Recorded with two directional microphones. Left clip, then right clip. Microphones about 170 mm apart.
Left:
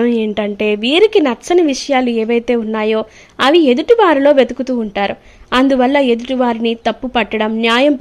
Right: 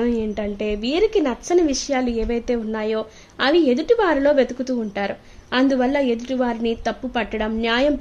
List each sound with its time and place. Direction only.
0.0 s a woman's voice: 25° left (ahead or behind)